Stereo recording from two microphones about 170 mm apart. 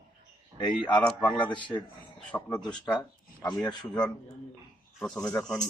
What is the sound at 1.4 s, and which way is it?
Speech, 30° left (ahead or behind).